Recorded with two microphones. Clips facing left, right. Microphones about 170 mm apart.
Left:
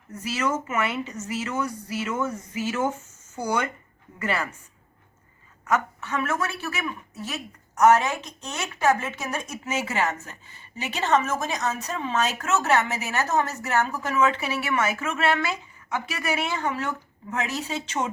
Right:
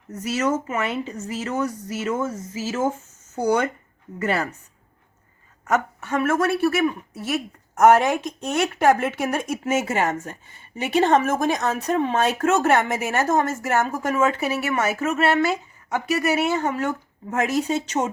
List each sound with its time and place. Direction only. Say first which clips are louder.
0.1 s speech: right 4 dB; 40° right (ahead or behind)
2.3 s speech: right 1 dB; 25° right (ahead or behind)
3.3 s speech: right 6 dB; 55° right (ahead or behind)
4.2 s speech: right 4 dB; 40° right (ahead or behind)
5.7 s speech: right 3 dB; 50° right (ahead or behind)